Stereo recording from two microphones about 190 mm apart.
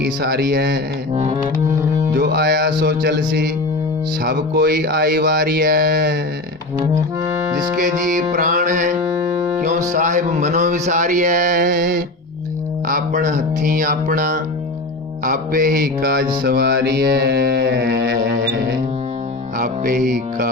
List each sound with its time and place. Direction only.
0.0 s speech: 55° right (ahead or behind)
1.1 s speech: 30° right (ahead or behind)
2.1 s speech: 55° right (ahead or behind)
7.8 s speech: 45° right (ahead or behind)
9.6 s music: 40° right (ahead or behind)
9.9 s speech: 40° right (ahead or behind)
16.4 s music: 55° right (ahead or behind)
19.5 s music: 45° right (ahead or behind)